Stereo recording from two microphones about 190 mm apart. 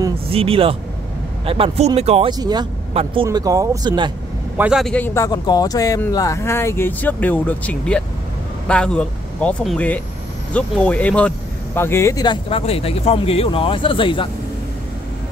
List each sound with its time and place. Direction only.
0.3 s speech: 30° right (ahead or behind)
2.3 s speech: 20° right (ahead or behind)
3.3 s speech: 20° right (ahead or behind)
4.6 s speech: 5° right (ahead or behind); by 14.3 s 25° left (ahead or behind)